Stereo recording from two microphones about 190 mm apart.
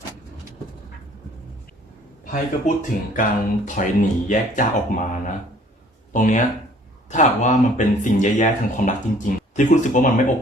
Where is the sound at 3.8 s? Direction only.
45° left (ahead or behind).